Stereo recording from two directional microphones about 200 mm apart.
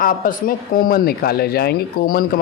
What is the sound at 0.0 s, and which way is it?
Speech, 45° left (ahead or behind).